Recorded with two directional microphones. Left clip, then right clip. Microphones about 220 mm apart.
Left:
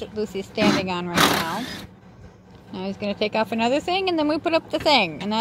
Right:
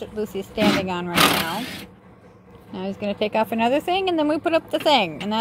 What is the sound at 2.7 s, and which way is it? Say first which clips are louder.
A woman's voice: right 1 dB; 5° right (ahead or behind).